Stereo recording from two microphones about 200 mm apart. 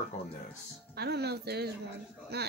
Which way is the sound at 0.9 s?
55° right (ahead or behind).